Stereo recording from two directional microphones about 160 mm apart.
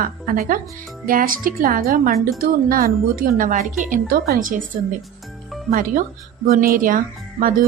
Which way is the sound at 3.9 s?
65° right (ahead or behind).